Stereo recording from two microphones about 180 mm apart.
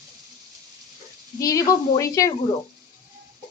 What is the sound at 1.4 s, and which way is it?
Speech, 20° left (ahead or behind).